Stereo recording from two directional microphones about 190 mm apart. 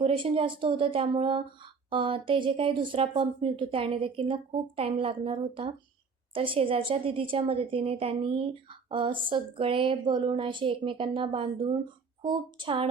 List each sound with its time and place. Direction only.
0.0 s speech: 30° right (ahead or behind)